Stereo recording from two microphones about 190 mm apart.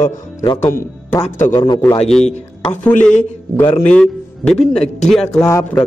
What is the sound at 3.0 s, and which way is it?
A man's voice, 5° left (ahead or behind).